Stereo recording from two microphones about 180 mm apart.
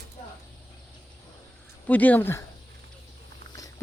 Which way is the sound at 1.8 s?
10° left (ahead or behind).